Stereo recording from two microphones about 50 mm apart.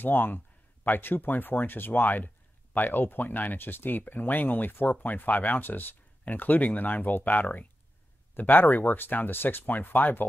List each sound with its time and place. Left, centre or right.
0.0 s speech: left